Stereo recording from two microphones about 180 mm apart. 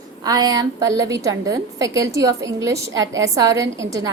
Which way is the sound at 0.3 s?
20° right (ahead or behind).